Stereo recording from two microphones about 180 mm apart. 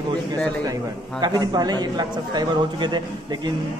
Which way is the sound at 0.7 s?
20° right (ahead or behind).